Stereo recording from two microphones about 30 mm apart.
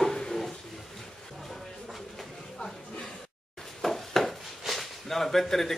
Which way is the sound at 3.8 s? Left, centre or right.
Centre.